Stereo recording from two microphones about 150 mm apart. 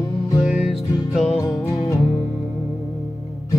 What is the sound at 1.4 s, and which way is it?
Music, 25° left (ahead or behind).